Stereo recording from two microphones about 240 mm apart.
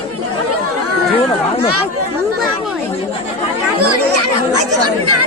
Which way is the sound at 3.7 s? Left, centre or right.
Right.